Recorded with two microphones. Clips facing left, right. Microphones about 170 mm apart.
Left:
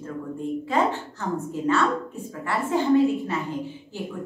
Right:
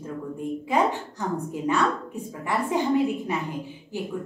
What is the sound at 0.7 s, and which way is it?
A woman's voice, 15° right (ahead or behind).